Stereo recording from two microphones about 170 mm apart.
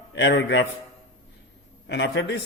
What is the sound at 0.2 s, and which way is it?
Speech, 90° left.